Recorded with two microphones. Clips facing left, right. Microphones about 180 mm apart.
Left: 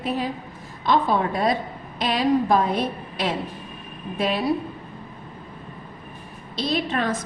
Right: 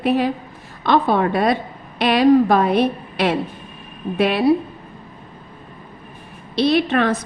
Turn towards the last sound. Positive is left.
turn(degrees=-70)  # may be behind; listen again after turning